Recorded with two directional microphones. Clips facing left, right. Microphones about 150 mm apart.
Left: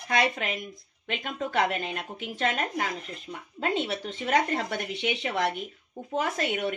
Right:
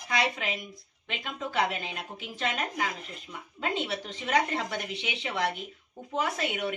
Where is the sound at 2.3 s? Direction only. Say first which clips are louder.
Left 4 dB; 45° left (ahead or behind).